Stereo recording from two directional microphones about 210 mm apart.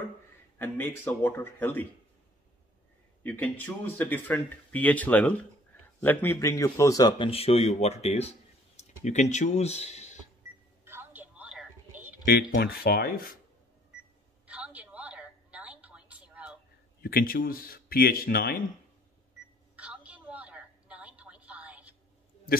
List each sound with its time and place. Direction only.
0.6 s speech: 10° left (ahead or behind)
3.3 s a man's voice: 10° left (ahead or behind); by 10.1 s 30° left (ahead or behind)
10.9 s a sound: 10° right (ahead or behind)
12.3 s speech: 45° left (ahead or behind)
14.4 s a sound: 5° right (ahead or behind)
17.0 s speech: 45° left (ahead or behind)
19.7 s telephone: 5° right (ahead or behind)